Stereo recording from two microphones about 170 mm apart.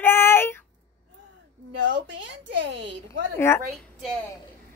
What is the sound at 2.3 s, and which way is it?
Speech, 90° right.